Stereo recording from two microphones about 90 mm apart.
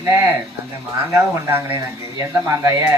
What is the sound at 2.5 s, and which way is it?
Speech, 35° right (ahead or behind).